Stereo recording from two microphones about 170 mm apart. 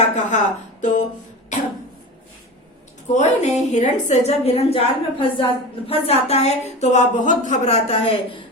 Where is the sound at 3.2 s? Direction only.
40° left (ahead or behind).